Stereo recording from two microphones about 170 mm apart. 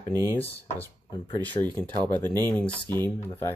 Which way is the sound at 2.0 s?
25° right (ahead or behind).